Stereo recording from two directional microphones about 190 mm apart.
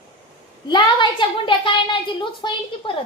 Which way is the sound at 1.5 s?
25° left (ahead or behind).